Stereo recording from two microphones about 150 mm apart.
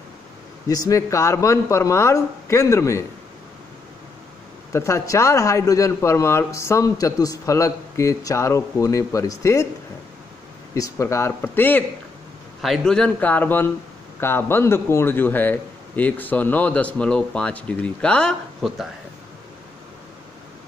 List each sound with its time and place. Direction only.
0.7 s a man's voice: 25° left (ahead or behind)
4.7 s a man's voice: 20° left (ahead or behind)
10.7 s a man's voice: 20° left (ahead or behind); by 18.9 s centre (ahead or behind)